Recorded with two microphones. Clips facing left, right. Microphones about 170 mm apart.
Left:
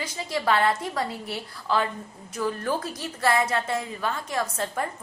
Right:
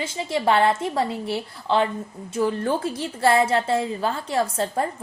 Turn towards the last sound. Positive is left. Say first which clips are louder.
# right 5 dB
turn(degrees=-30)  # may be behind; listen again after turning